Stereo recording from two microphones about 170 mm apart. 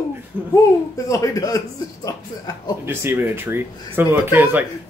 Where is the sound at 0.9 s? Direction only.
20° left (ahead or behind).